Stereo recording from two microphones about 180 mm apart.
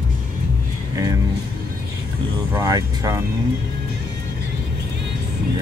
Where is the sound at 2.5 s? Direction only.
20° right (ahead or behind).